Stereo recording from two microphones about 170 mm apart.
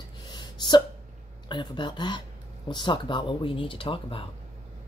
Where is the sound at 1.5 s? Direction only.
25° left (ahead or behind).